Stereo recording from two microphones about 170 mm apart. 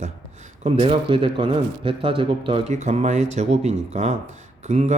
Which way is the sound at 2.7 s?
40° right (ahead or behind).